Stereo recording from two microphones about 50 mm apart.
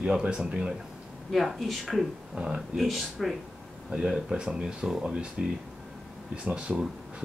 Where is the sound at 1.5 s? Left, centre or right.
Centre.